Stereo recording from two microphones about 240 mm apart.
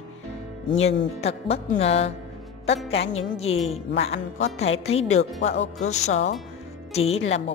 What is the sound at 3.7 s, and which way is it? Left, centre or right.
Speech, left.